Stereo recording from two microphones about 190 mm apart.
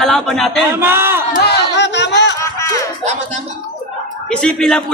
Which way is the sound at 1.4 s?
60° left (ahead or behind).